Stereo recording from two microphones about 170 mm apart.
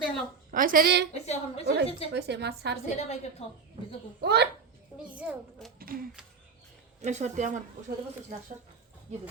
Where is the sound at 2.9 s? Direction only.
40° left (ahead or behind).